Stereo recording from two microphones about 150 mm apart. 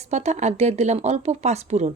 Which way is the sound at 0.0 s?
50° right (ahead or behind).